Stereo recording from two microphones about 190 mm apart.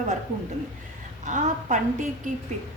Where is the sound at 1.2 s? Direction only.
40° right (ahead or behind).